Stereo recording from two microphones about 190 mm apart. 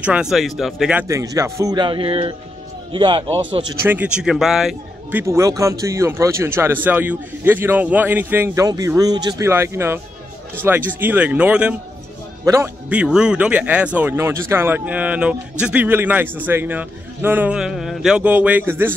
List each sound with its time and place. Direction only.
0.0 s a man's voice: 5° right (ahead or behind); by 3.4 s 25° right (ahead or behind)
3.8 s speech: 10° right (ahead or behind)
5.2 s speech: 15° right (ahead or behind)